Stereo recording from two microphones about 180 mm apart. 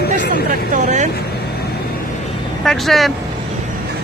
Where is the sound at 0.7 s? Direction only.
40° right (ahead or behind).